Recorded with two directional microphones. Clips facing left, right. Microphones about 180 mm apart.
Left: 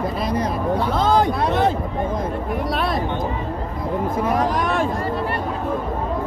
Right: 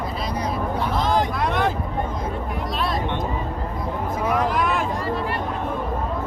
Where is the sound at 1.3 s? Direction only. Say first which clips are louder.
Left 4 dB; 30° left (ahead or behind).